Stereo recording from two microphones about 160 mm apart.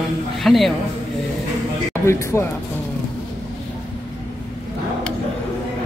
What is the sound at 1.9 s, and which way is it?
Speech, 15° left (ahead or behind).